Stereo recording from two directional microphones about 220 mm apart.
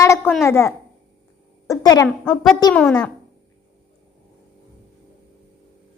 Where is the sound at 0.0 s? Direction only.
10° left (ahead or behind).